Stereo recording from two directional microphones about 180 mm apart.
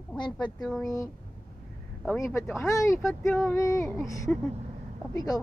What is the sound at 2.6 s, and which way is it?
Speech, 15° left (ahead or behind).